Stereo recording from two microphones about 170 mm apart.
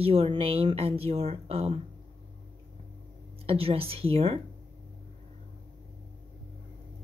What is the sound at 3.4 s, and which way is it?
Speech, 35° right (ahead or behind).